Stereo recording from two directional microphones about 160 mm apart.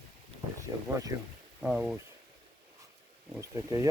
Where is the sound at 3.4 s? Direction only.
20° right (ahead or behind).